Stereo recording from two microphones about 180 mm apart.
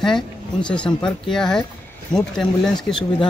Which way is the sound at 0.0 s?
5° left (ahead or behind).